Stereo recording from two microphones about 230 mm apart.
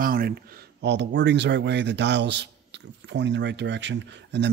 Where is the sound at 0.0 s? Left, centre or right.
Right.